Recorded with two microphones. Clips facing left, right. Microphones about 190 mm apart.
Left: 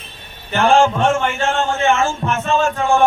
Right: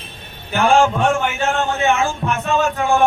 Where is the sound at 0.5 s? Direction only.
Centre (ahead or behind).